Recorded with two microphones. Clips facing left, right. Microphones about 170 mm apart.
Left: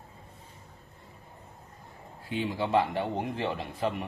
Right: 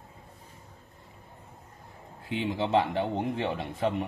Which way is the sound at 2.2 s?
20° right (ahead or behind).